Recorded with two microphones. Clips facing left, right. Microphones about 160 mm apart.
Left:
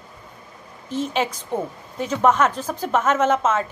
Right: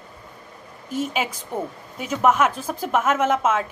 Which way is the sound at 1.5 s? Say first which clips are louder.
Left 2 dB; 30° left (ahead or behind).